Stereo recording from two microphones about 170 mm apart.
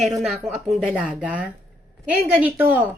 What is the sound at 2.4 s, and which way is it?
Speech, 10° right (ahead or behind).